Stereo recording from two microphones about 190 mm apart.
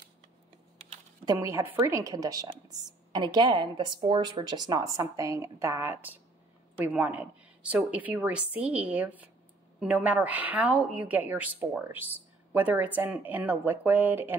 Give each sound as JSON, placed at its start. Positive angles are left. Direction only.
{"t": 1.2, "sound": "a woman's voice", "side_deg": -15}